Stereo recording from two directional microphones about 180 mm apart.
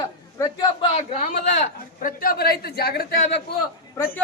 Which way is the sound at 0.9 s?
40° left (ahead or behind).